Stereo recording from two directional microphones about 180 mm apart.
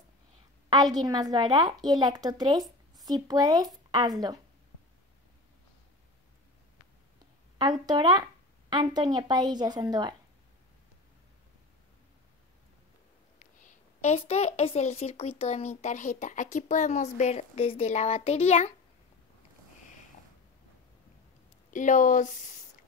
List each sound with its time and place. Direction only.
0.9 s speech: 20° right (ahead or behind)
7.8 s speech: 25° right (ahead or behind)
13.4 s a woman's voice: 45° left (ahead or behind)
21.6 s speech: 45° left (ahead or behind)